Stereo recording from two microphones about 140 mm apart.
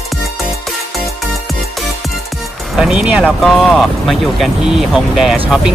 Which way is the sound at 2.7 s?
5° right (ahead or behind).